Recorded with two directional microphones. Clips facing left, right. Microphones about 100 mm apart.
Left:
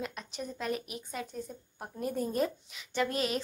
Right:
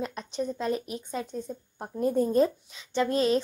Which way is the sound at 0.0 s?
30° right (ahead or behind).